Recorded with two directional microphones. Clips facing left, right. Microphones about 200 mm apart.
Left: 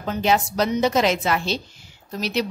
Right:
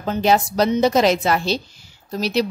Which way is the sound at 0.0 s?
35° right (ahead or behind).